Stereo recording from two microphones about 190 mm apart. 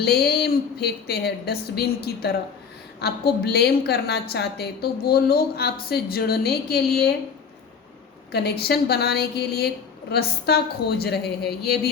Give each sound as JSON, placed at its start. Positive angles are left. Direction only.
{"t": 0.0, "sound": "a woman's voice", "side_deg": 55}
{"t": 8.3, "sound": "a woman's voice", "side_deg": 55}